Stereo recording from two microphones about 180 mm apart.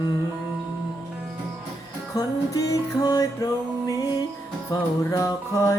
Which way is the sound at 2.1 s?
20° left (ahead or behind).